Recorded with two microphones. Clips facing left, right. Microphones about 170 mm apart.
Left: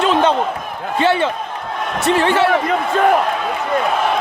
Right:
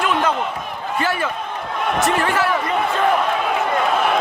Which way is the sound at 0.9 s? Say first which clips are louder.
Left 6 dB; 25° left (ahead or behind).